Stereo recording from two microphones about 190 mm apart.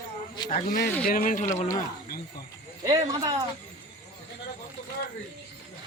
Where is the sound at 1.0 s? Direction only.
45° left (ahead or behind).